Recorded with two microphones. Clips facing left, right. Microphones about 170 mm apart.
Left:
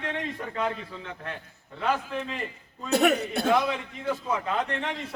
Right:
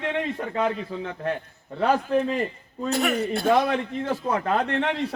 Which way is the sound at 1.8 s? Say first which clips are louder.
Right 7 dB; 35° right (ahead or behind).